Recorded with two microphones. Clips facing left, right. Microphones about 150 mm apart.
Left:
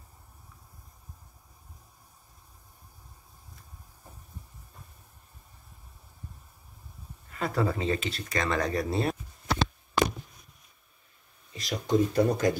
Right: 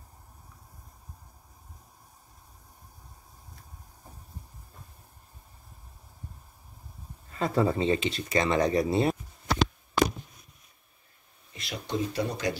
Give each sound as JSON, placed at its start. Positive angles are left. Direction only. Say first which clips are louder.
{"t": 7.2, "sound": "speech", "louder": "right 3 dB", "side_deg": -30}
{"t": 8.8, "sound": "a sound", "louder": "right 3 dB", "side_deg": 0}
{"t": 11.5, "sound": "speech", "louder": "left 7 dB", "side_deg": 40}